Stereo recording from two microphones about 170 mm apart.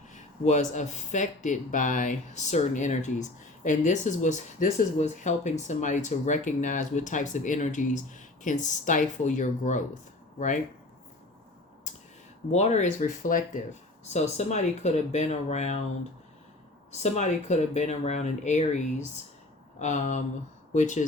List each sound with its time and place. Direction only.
0.1 s speech: 45° left (ahead or behind)
12.5 s speech: 40° left (ahead or behind)
17.0 s speech: 45° left (ahead or behind)